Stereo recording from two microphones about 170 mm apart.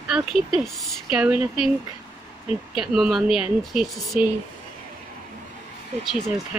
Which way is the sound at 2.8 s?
Centre (ahead or behind).